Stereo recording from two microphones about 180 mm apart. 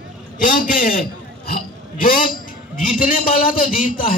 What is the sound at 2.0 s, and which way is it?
A man's voice, 50° left (ahead or behind).